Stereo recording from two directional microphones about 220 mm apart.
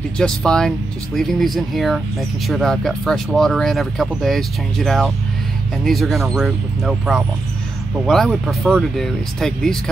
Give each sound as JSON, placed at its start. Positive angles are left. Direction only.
{"t": 0.2, "sound": "speech", "side_deg": 5}